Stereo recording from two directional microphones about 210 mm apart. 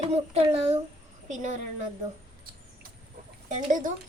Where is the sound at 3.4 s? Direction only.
40° right (ahead or behind).